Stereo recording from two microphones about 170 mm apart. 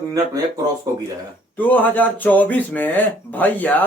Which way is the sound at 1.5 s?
10° left (ahead or behind).